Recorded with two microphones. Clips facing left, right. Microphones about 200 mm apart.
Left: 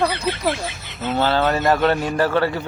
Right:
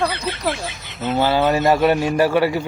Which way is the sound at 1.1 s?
20° right (ahead or behind).